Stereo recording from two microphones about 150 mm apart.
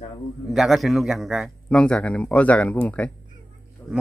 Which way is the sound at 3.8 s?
15° left (ahead or behind).